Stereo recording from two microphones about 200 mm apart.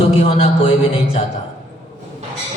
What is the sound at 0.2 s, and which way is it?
Speech, 30° left (ahead or behind).